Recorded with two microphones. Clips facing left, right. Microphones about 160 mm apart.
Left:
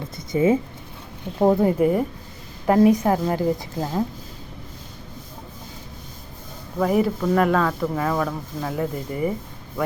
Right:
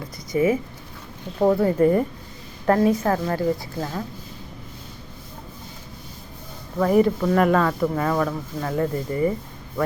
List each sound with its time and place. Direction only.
0.2 s a woman's voice: 25° left (ahead or behind)
1.8 s speech: 5° left (ahead or behind)
2.6 s a woman's voice: 15° left (ahead or behind)
6.7 s speech: 5° left (ahead or behind)